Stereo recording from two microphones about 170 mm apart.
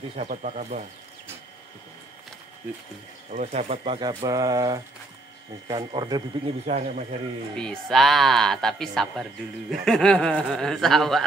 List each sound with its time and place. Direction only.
0.2 s speech: 45° right (ahead or behind)
3.3 s speech: 45° right (ahead or behind); by 6.2 s 25° right (ahead or behind)
6.4 s a man's voice: 40° right (ahead or behind)
7.5 s speech: 5° left (ahead or behind)